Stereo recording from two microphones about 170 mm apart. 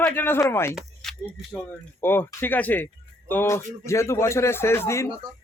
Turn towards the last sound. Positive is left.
turn(degrees=15)  # may be behind; listen again after turning